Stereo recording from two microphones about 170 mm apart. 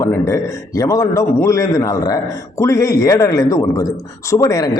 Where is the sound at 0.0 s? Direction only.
20° left (ahead or behind).